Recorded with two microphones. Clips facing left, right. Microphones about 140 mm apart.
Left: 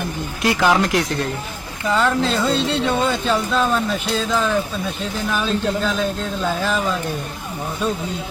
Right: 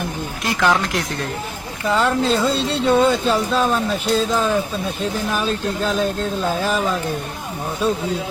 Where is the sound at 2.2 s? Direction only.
35° right (ahead or behind).